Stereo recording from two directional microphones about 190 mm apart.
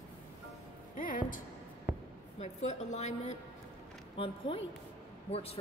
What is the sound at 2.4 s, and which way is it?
A woman's voice, 35° left (ahead or behind).